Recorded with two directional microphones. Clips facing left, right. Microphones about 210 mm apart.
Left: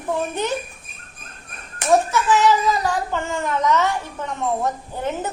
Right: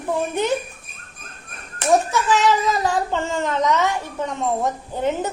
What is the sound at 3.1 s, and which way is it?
A woman's voice, 25° right (ahead or behind).